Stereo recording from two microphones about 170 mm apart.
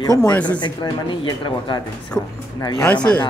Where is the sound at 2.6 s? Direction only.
20° left (ahead or behind).